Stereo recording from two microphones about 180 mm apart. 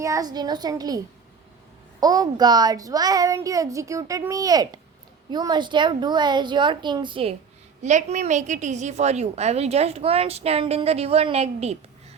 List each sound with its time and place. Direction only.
0.0 s a child's voice: 20° right (ahead or behind)
7.8 s a woman's voice: 40° right (ahead or behind)